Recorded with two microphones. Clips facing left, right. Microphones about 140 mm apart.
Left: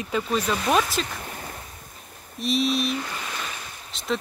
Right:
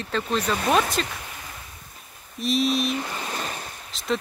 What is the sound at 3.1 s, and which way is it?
Waves, 35° right (ahead or behind).